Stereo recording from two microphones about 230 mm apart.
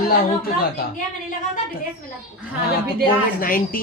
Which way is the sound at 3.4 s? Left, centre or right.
Left.